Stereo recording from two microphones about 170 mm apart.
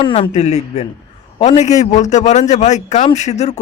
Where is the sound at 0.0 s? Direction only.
35° left (ahead or behind).